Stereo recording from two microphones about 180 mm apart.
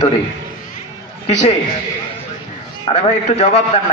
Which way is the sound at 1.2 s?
40° left (ahead or behind).